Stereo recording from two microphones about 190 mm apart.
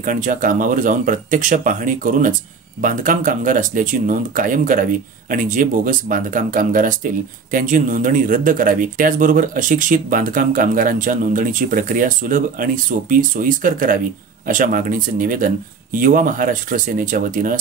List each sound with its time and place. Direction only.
0.0 s speech: 45° right (ahead or behind)